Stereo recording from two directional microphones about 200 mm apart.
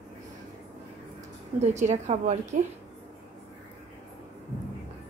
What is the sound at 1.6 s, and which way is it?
A woman's voice, 35° right (ahead or behind).